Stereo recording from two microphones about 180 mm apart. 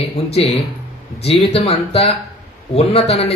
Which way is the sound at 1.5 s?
35° left (ahead or behind).